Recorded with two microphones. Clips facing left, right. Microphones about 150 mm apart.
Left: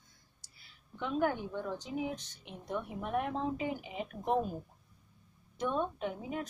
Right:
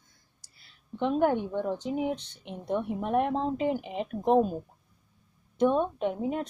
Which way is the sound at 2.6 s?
25° right (ahead or behind).